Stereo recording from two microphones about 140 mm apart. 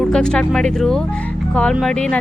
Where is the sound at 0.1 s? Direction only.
5° left (ahead or behind).